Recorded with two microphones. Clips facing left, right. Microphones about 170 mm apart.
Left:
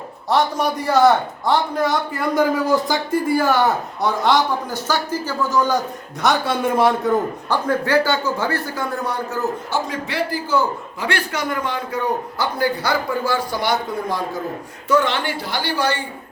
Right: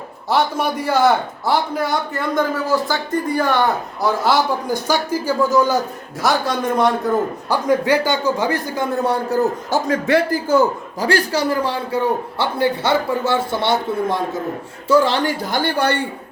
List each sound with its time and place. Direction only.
0.3 s a man's voice: centre (ahead or behind)
2.6 s speech: 15° left (ahead or behind)
3.2 s a man's voice: 5° left (ahead or behind)
4.0 s a man's voice: 5° right (ahead or behind)
6.2 s a man's voice: 5° left (ahead or behind)
7.5 s a man's voice: 15° right (ahead or behind)
9.3 s a man's voice: 40° right (ahead or behind); by 16.0 s 60° right (ahead or behind)